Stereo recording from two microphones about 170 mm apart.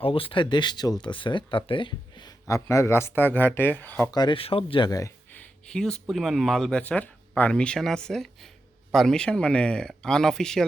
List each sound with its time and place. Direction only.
0.0 s speech: 30° left (ahead or behind); by 4.1 s 10° left (ahead or behind)
4.1 s speech: 25° left (ahead or behind); by 10.6 s 5° left (ahead or behind)